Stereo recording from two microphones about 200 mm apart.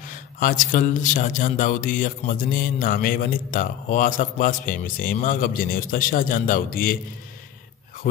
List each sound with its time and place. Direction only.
0.4 s a man's voice: 40° left (ahead or behind)